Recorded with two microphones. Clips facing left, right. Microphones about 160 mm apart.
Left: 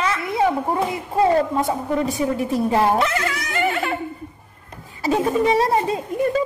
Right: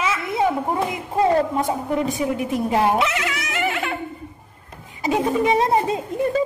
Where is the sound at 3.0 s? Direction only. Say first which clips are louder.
Left 1 dB; 5° right (ahead or behind).